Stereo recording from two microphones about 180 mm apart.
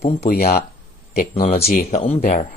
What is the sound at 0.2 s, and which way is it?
Speech, 60° left (ahead or behind).